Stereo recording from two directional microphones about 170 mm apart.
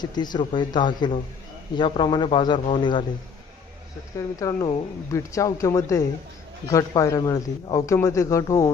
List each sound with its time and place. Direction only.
0.0 s a man's voice: 25° left (ahead or behind)
4.4 s a man's voice: 20° left (ahead or behind)